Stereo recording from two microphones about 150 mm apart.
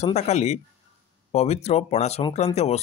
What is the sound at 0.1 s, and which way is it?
Speech, 50° left (ahead or behind).